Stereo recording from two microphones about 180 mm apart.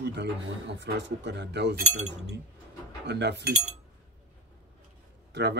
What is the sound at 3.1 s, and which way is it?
Speech, 70° right (ahead or behind).